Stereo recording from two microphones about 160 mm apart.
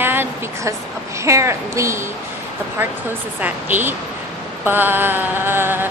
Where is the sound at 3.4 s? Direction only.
10° right (ahead or behind).